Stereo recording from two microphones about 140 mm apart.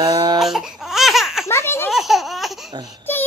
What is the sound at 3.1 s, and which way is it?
Music, 15° left (ahead or behind).